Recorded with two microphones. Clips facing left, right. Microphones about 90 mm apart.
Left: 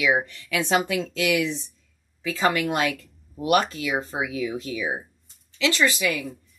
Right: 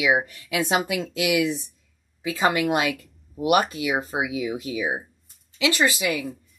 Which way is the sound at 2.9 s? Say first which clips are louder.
Even; 5° right (ahead or behind).